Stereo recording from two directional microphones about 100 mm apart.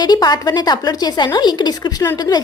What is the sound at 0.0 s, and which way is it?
A woman's voice, 45° left (ahead or behind).